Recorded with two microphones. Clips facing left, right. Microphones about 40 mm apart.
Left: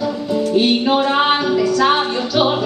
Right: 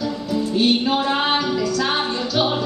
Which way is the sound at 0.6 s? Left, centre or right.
Left.